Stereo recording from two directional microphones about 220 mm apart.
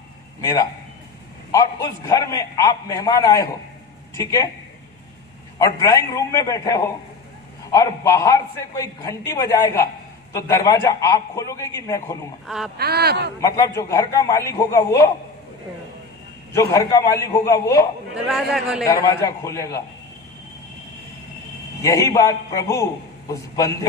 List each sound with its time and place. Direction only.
1.5 s a man's voice: 15° left (ahead or behind)
5.6 s a man's voice: 15° left (ahead or behind)
12.4 s a man's voice: centre (ahead or behind)
12.7 s speech: 45° right (ahead or behind)
13.4 s a man's voice: 15° left (ahead or behind)
16.5 s a man's voice: 15° left (ahead or behind)
18.1 s a man's voice: centre (ahead or behind)
18.9 s a man's voice: 15° left (ahead or behind)
21.8 s a man's voice: 15° left (ahead or behind)